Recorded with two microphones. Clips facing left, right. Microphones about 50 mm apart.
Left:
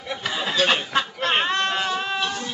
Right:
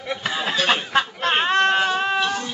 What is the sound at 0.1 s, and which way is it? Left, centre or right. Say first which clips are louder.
Snicker: right 2 dB; centre.